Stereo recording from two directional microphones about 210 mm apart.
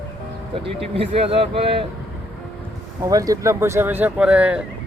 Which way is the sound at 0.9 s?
25° right (ahead or behind).